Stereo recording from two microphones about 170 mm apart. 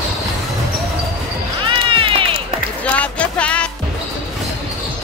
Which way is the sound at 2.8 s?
5° left (ahead or behind).